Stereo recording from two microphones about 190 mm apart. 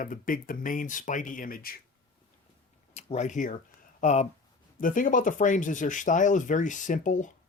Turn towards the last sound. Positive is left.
turn(degrees=40)  # may be behind; listen again after turning